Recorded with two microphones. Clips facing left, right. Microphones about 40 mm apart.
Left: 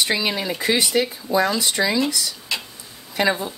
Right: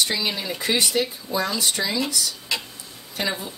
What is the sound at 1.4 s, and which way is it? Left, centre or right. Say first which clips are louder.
Speech: left 4 dB; centre.